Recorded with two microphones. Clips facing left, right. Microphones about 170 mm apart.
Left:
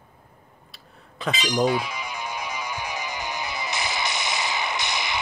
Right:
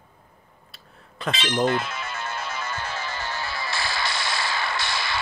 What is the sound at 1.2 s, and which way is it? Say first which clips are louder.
Music: left 1 dB; 5° left (ahead or behind).